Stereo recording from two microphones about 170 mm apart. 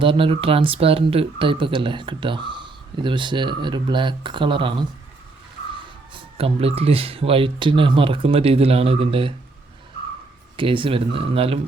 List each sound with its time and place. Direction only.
0.0 s speech: 30° right (ahead or behind)
6.3 s speech: 35° right (ahead or behind)
10.6 s speech: 30° right (ahead or behind)